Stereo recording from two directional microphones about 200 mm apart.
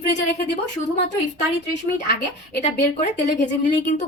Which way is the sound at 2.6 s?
35° left (ahead or behind).